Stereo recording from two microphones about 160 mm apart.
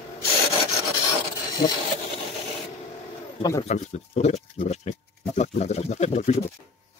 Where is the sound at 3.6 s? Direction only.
45° left (ahead or behind).